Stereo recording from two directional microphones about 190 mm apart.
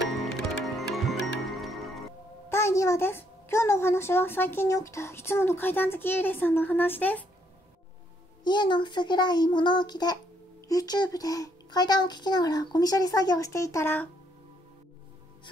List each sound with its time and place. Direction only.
0.7 s music: centre (ahead or behind)
2.5 s a child's voice: 15° left (ahead or behind)
8.5 s a child's voice: 25° left (ahead or behind)